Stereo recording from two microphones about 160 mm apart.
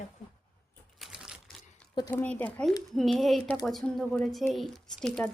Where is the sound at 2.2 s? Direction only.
10° left (ahead or behind).